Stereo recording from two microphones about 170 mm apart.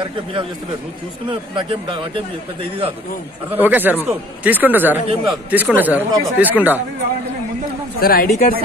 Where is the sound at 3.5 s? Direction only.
10° right (ahead or behind).